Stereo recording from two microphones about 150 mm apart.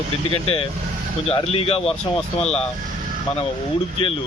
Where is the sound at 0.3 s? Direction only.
40° left (ahead or behind).